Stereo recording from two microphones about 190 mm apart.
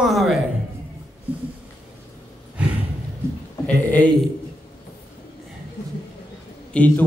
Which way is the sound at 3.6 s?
10° left (ahead or behind).